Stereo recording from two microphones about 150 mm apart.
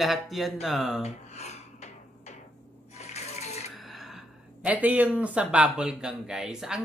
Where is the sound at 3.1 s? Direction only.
45° left (ahead or behind).